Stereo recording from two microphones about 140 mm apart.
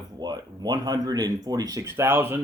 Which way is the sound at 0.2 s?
30° right (ahead or behind).